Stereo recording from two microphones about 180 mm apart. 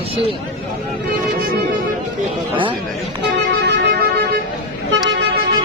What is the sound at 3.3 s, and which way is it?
Music, 75° right (ahead or behind).